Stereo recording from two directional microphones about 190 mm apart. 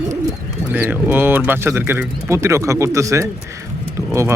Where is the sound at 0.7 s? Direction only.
10° right (ahead or behind).